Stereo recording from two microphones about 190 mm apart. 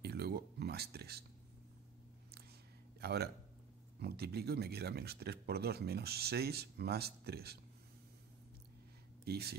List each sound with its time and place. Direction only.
0.0 s a sound: 55° right (ahead or behind)
3.0 s speech: 55° right (ahead or behind)
9.2 s speech: 55° right (ahead or behind)